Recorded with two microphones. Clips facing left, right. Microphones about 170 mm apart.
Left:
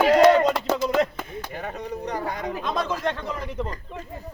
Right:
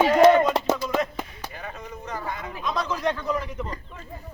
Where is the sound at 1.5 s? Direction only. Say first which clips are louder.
Left 7 dB; 40° left (ahead or behind).